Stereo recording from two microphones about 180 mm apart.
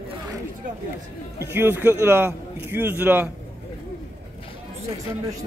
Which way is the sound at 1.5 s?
10° right (ahead or behind).